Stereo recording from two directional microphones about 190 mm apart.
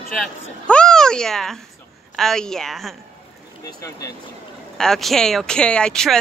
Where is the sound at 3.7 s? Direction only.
20° left (ahead or behind).